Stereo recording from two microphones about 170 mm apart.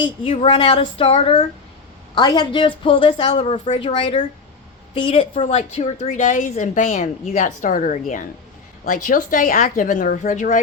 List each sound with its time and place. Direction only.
0.0 s a woman's voice: 30° left (ahead or behind)
3.4 s a woman's voice: 45° left (ahead or behind)
3.8 s a woman's voice: 30° left (ahead or behind); by 10.6 s 50° left (ahead or behind)